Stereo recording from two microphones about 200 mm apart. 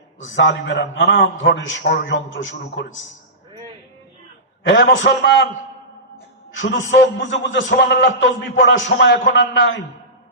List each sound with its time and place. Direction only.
0.3 s a man's voice: 65° left (ahead or behind)
4.6 s a man's voice: 65° left (ahead or behind)
6.6 s a man's voice: 65° left (ahead or behind)